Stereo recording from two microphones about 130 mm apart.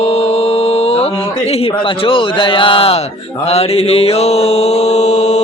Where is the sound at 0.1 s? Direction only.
50° left (ahead or behind).